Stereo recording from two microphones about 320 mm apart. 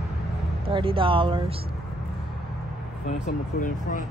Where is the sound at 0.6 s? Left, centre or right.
Centre.